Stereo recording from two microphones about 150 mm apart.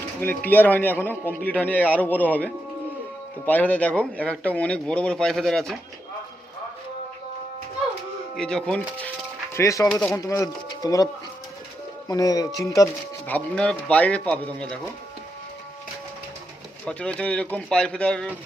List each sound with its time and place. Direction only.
0.2 s speech: 10° left (ahead or behind)
8.4 s speech: 5° left (ahead or behind)
9.6 s speech: 20° left (ahead or behind)
9.9 s speech: 5° left (ahead or behind)
10.2 s speech: 20° left (ahead or behind)
16.8 s speech: 10° left (ahead or behind)